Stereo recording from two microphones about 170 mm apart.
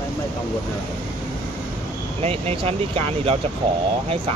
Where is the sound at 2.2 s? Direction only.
35° right (ahead or behind).